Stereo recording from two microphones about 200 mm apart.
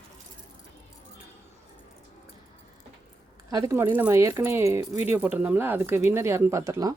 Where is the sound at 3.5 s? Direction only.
15° right (ahead or behind).